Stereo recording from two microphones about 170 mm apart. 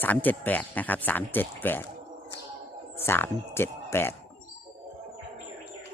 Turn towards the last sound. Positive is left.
turn(degrees=15)  # may be behind; listen again after turning